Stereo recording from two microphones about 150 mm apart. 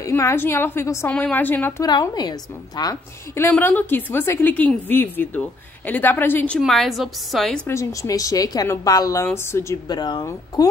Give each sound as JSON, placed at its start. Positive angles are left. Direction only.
{"t": 0.0, "sound": "a woman's voice", "side_deg": 20}
{"t": 1.9, "sound": "a woman's voice", "side_deg": 30}
{"t": 6.6, "sound": "a woman's voice", "side_deg": 0}
{"t": 7.6, "sound": "a woman's voice", "side_deg": 20}